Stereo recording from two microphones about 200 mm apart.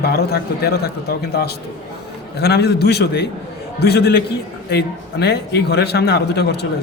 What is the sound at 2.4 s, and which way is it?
A man's voice, 55° left (ahead or behind).